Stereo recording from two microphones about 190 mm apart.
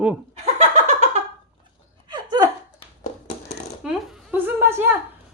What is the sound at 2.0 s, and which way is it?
Laughter, 20° right (ahead or behind).